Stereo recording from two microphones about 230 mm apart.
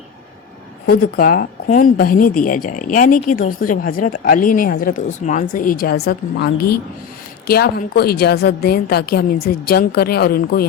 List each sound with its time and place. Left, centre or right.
0.9 s a woman's voice: left